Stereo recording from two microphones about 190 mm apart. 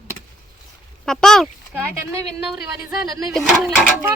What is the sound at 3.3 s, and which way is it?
Speech, centre (ahead or behind).